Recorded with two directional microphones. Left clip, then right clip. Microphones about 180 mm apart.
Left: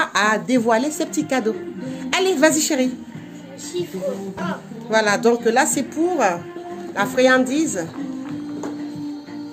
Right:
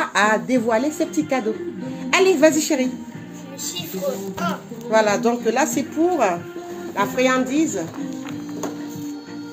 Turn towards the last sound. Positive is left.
turn(degrees=15)  # may be behind; listen again after turning